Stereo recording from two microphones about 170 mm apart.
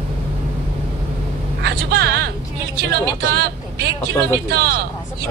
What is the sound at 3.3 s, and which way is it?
Vehicle, 75° right (ahead or behind).